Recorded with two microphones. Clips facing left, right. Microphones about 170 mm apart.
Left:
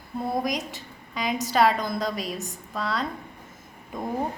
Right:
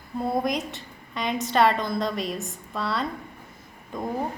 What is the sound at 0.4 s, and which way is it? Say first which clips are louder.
A woman's voice: right 2 dB; centre (ahead or behind).